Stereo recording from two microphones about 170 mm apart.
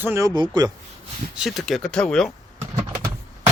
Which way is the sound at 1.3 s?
Centre (ahead or behind).